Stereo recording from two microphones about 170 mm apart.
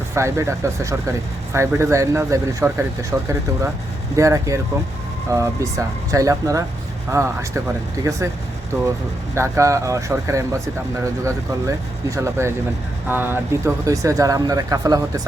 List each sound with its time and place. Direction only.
0.1 s speech: 15° right (ahead or behind)
9.3 s speech: 15° right (ahead or behind)